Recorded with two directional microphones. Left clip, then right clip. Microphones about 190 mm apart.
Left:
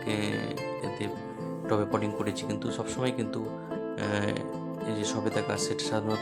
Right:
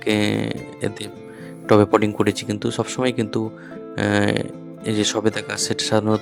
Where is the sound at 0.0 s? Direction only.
45° right (ahead or behind).